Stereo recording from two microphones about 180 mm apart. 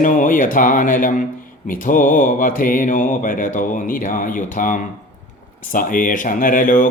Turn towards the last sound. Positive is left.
turn(degrees=45)  # may be behind; listen again after turning